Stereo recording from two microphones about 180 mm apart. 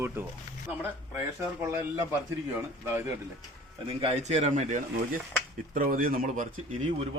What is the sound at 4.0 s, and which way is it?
Speech, 35° right (ahead or behind).